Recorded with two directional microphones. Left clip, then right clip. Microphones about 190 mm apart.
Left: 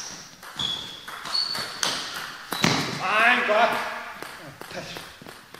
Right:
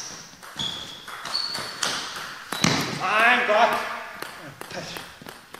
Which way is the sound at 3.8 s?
Centre (ahead or behind).